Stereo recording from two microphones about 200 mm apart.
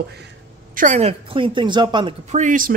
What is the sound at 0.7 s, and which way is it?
A woman's voice, 35° right (ahead or behind).